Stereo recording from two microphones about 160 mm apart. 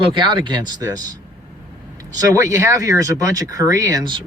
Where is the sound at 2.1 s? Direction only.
20° right (ahead or behind).